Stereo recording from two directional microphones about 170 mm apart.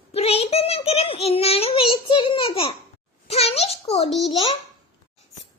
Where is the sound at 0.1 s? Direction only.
35° left (ahead or behind).